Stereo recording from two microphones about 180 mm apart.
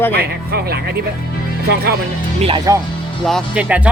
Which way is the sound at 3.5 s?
5° right (ahead or behind).